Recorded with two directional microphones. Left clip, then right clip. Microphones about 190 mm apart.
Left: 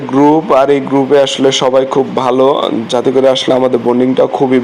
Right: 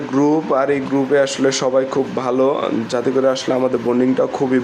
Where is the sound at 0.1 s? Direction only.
15° left (ahead or behind).